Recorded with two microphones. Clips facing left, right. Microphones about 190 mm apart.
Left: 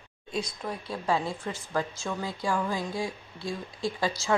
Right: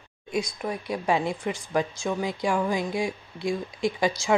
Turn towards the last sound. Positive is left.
turn(degrees=-15)  # may be behind; listen again after turning